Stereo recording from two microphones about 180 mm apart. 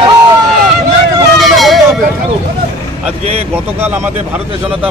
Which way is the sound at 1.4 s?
Centre (ahead or behind).